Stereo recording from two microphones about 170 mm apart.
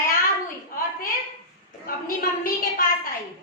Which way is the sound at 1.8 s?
55° left (ahead or behind).